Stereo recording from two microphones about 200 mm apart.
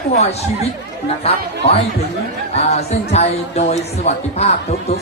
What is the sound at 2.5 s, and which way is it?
Speech, 30° left (ahead or behind).